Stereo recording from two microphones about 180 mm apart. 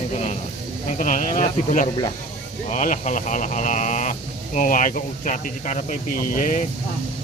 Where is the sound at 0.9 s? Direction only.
45° left (ahead or behind).